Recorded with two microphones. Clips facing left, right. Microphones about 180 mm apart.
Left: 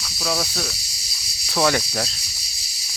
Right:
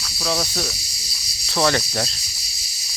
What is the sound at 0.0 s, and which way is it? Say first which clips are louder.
Insect: right 1 dB; centre (ahead or behind).